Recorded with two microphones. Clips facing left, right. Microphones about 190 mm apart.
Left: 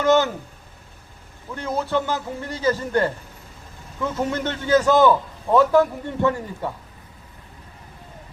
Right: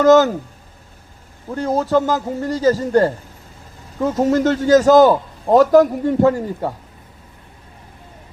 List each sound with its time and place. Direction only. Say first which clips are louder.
0.0 s a man's voice: right 7 dB; 40° right (ahead or behind)
1.5 s a man's voice: right 7 dB; 40° right (ahead or behind)